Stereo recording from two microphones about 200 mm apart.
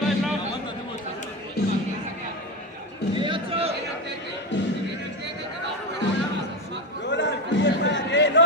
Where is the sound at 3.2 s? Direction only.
25° right (ahead or behind).